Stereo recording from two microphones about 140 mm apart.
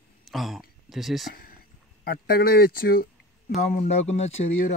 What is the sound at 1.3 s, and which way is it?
Speech, 90° left.